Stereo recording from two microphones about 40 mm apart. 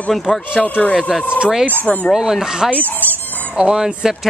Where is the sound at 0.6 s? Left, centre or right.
Left.